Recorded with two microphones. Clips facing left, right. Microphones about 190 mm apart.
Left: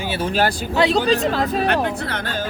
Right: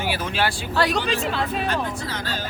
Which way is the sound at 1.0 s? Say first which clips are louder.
Left 6 dB; 40° left (ahead or behind).